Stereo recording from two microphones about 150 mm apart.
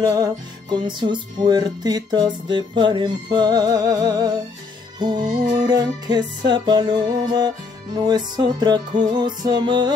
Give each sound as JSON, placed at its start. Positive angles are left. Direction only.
{"t": 0.0, "sound": "music", "side_deg": -25}
{"t": 5.2, "sound": "music", "side_deg": -55}
{"t": 5.6, "sound": "music", "side_deg": -25}